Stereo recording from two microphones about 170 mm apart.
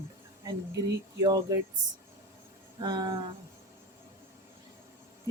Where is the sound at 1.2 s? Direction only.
25° right (ahead or behind).